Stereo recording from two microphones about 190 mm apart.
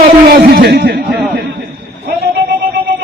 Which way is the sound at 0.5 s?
60° right (ahead or behind).